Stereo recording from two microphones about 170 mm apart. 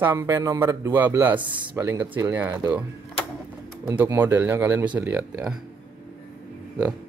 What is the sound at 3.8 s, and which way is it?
Speech, 10° right (ahead or behind).